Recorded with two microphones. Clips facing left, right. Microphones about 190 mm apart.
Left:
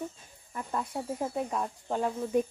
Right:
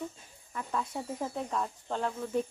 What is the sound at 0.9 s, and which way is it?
Speech, 10° left (ahead or behind).